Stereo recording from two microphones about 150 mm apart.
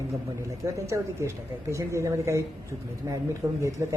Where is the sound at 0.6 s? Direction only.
20° right (ahead or behind).